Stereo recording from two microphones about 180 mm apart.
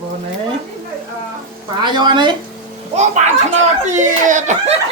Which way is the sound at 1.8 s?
25° right (ahead or behind).